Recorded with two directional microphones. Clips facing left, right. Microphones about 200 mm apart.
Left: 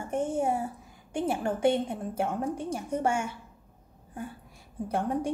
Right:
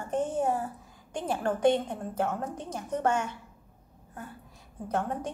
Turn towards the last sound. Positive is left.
turn(degrees=10)  # may be behind; listen again after turning